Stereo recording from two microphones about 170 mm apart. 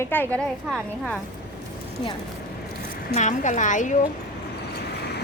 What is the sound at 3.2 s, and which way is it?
Speech, 45° left (ahead or behind).